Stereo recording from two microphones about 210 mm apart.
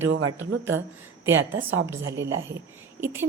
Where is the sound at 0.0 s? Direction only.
75° right (ahead or behind).